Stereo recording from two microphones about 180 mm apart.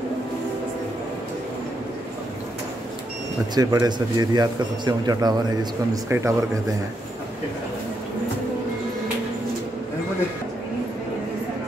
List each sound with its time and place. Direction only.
3.5 s speech: 20° right (ahead or behind)